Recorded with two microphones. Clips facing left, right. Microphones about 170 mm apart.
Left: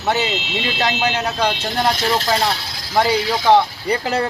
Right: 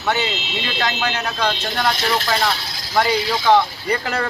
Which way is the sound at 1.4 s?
30° left (ahead or behind).